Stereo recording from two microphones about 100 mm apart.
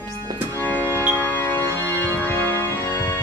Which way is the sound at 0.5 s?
20° left (ahead or behind).